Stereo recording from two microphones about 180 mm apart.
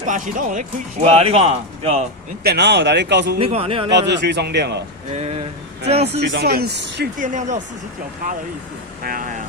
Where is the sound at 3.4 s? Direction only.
30° right (ahead or behind).